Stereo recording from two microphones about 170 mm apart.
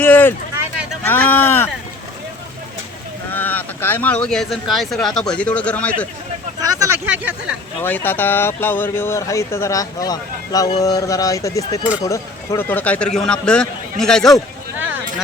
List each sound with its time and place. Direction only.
0.0 s a sound: 10° left (ahead or behind)
0.5 s a sound: 15° right (ahead or behind)
1.0 s speech: 10° left (ahead or behind)
3.3 s speech: 10° left (ahead or behind)
6.6 s speech: 20° right (ahead or behind)
7.8 s a man's voice: 10° left (ahead or behind)